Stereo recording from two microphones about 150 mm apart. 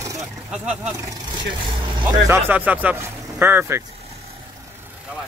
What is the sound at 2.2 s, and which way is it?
Speech, 15° right (ahead or behind).